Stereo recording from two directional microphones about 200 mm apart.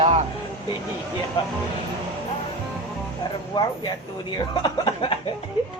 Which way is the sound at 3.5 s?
20° left (ahead or behind).